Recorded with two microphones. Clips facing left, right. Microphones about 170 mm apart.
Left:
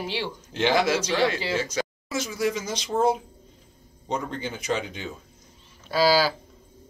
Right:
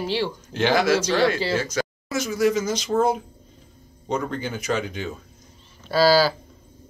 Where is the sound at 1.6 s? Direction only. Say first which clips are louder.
Right 2 dB; 25° left (ahead or behind).